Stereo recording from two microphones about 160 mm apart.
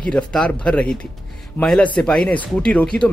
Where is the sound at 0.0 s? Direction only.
5° left (ahead or behind).